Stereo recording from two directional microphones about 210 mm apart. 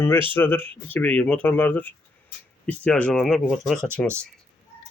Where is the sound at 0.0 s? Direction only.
10° left (ahead or behind).